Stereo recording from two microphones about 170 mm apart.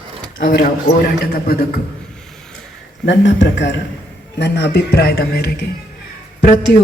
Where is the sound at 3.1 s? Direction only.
90° left; by 5.6 s 65° left (ahead or behind).